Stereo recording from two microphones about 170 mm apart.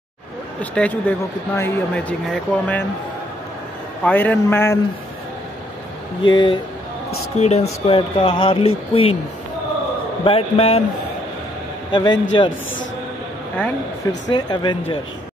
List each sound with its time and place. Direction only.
0.6 s speech: 10° left (ahead or behind)
4.0 s speech: 10° left (ahead or behind)
6.2 s speech: 30° left (ahead or behind)
10.2 s speech: 35° left (ahead or behind)
11.9 s speech: 25° left (ahead or behind)
14.3 s speech: 25° left (ahead or behind)